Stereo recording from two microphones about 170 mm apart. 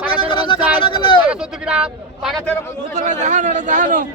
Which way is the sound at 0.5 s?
10° right (ahead or behind).